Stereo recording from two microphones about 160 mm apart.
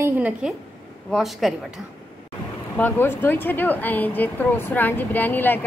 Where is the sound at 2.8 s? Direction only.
10° left (ahead or behind).